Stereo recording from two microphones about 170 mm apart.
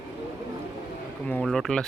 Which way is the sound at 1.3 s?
5° left (ahead or behind).